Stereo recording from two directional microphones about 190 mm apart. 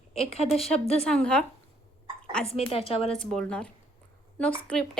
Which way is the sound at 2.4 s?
30° left (ahead or behind).